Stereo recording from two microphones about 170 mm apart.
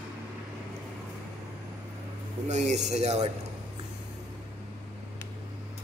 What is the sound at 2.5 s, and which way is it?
Speech, 45° right (ahead or behind).